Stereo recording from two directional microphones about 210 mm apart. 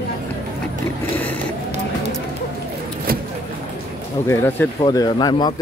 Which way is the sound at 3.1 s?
45° right (ahead or behind).